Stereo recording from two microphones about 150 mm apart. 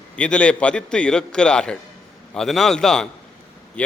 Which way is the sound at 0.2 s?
5° left (ahead or behind).